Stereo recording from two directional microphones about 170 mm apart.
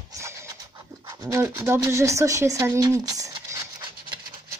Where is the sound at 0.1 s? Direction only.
15° right (ahead or behind).